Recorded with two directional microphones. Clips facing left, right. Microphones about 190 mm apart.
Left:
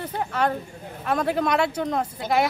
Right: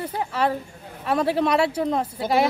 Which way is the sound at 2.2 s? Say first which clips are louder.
Right 1 dB; 30° right (ahead or behind).